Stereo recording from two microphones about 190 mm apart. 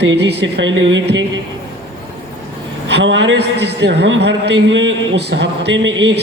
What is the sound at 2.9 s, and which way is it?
A man's voice, 65° right (ahead or behind).